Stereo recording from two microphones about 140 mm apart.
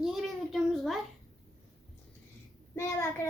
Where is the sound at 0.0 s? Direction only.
Centre (ahead or behind).